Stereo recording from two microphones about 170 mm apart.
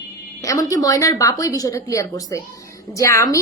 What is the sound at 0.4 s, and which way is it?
A woman's voice, 20° left (ahead or behind).